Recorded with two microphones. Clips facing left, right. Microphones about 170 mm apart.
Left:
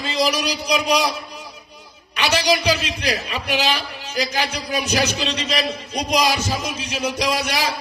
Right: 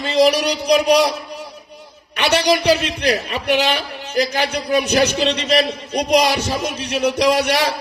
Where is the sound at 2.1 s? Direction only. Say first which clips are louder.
Right 3 dB; 60° right (ahead or behind).